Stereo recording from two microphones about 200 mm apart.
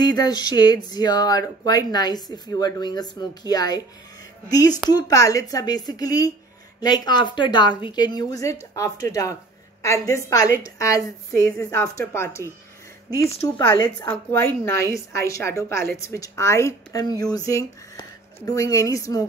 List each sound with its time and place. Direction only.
0.0 s speech: 20° left (ahead or behind)